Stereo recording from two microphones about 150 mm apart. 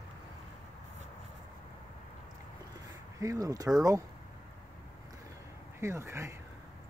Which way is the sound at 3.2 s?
20° right (ahead or behind).